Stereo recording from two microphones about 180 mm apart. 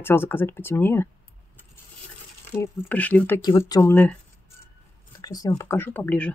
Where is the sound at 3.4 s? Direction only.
20° left (ahead or behind).